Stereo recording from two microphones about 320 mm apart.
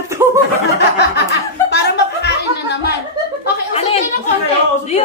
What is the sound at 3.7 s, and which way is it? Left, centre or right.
Speech, centre.